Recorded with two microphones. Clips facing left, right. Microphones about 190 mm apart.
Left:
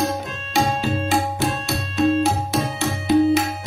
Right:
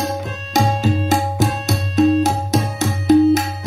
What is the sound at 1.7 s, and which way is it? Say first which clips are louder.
Music: right 5 dB; 40° right (ahead or behind).